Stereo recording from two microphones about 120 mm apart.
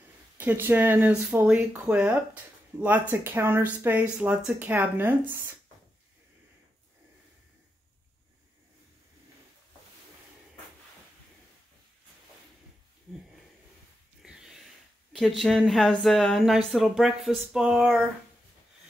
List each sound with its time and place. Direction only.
0.4 s speech: 15° right (ahead or behind)
14.2 s a sound: 5° right (ahead or behind)
15.1 s speech: centre (ahead or behind)